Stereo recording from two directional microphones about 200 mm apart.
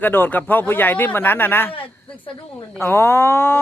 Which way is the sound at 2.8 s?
10° left (ahead or behind).